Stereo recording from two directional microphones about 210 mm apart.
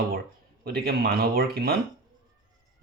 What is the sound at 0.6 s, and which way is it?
Speech, 50° right (ahead or behind).